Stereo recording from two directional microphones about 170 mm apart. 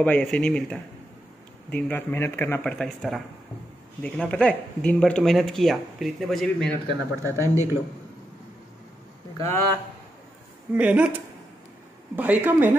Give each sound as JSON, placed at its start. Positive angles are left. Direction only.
{"t": 0.0, "sound": "speech", "side_deg": 10}
{"t": 7.2, "sound": "speech", "side_deg": -15}
{"t": 9.4, "sound": "speech", "side_deg": 15}
{"t": 10.7, "sound": "speech", "side_deg": -10}